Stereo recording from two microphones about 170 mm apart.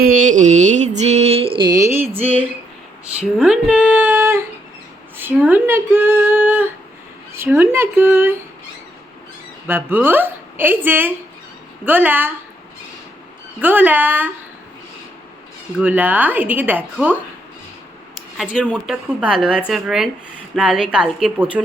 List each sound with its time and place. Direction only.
0.0 s mantra: 55° right (ahead or behind); by 2.0 s 15° right (ahead or behind)
2.1 s a woman's voice: 10° right (ahead or behind)
9.6 s a woman's voice: 10° right (ahead or behind)
13.6 s a woman's voice: 10° right (ahead or behind)
15.8 s a woman's voice: 10° right (ahead or behind)
18.3 s speech: 5° right (ahead or behind)